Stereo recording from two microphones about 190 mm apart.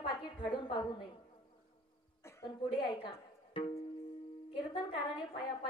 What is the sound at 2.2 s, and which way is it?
Speech, 20° left (ahead or behind).